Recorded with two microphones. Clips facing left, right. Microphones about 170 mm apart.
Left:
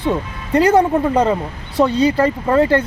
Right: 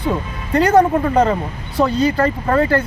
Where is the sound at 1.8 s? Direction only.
30° left (ahead or behind).